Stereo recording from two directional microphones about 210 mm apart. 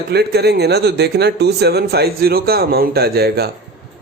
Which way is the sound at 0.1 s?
50° right (ahead or behind).